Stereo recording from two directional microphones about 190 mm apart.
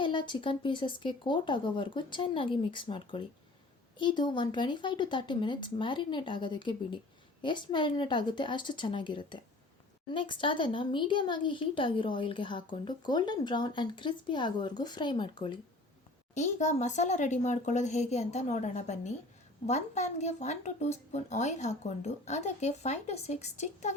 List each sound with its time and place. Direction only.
0.0 s speech: 25° left (ahead or behind)
16.3 s speech: 40° left (ahead or behind)